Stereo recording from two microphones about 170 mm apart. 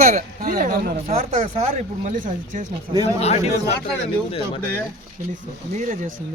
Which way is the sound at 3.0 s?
40° left (ahead or behind).